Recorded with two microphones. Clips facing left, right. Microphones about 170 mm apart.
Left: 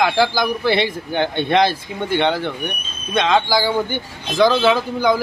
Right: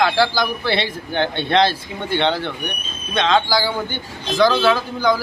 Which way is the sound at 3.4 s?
20° left (ahead or behind).